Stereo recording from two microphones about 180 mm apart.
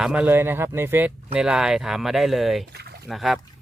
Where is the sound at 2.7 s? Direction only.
65° right (ahead or behind).